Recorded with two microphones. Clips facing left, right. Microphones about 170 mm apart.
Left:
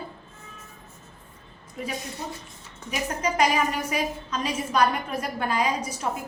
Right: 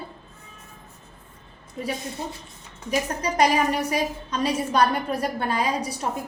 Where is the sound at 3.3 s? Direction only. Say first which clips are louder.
Right 4 dB; 35° right (ahead or behind).